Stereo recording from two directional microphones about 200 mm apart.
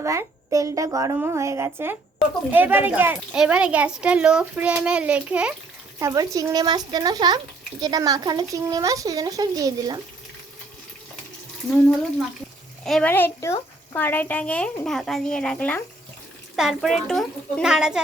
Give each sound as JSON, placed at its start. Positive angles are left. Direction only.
{"t": 0.0, "sound": "a woman's voice", "side_deg": -15}
{"t": 6.0, "sound": "a woman's voice", "side_deg": -15}
{"t": 12.8, "sound": "a child's voice", "side_deg": 5}